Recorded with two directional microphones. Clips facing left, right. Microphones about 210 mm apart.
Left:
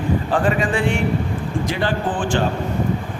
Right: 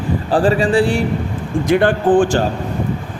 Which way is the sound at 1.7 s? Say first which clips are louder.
Right 12 dB; 55° right (ahead or behind).